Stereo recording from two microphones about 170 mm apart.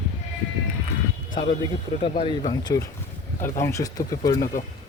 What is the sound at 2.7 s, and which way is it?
Speech, 20° left (ahead or behind).